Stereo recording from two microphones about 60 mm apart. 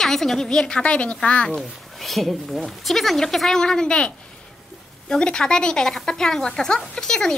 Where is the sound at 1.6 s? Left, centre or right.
Centre.